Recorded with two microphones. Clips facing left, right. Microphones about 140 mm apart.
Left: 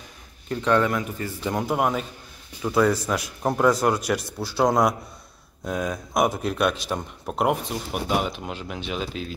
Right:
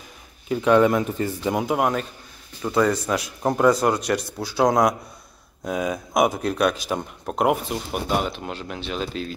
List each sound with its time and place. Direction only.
0.5 s speech: 10° right (ahead or behind)
0.8 s a man's voice: 25° right (ahead or behind)
1.5 s speech: centre (ahead or behind)